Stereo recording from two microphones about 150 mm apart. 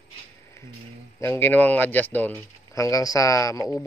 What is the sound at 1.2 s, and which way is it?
Speech, 15° left (ahead or behind).